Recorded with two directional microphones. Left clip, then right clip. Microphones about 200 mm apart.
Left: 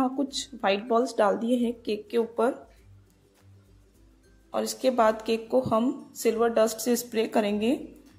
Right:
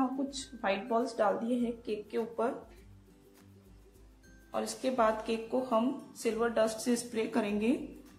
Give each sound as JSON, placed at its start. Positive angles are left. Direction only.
{"t": 0.0, "sound": "speech", "side_deg": 40}
{"t": 4.5, "sound": "speech", "side_deg": 35}